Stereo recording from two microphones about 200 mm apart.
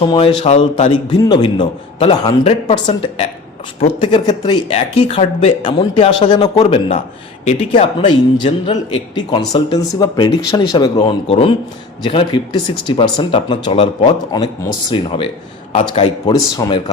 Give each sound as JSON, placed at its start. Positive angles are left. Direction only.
{"t": 0.0, "sound": "speech", "side_deg": 25}
{"t": 1.2, "sound": "speech", "side_deg": 20}